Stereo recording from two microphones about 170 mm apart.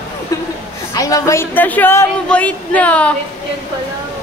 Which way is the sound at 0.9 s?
20° left (ahead or behind).